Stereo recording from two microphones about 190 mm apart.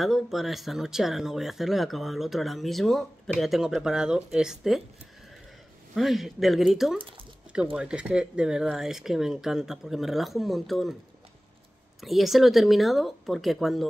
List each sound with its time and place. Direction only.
0.0 s speech: centre (ahead or behind)
5.9 s speech: centre (ahead or behind)
12.0 s speech: centre (ahead or behind)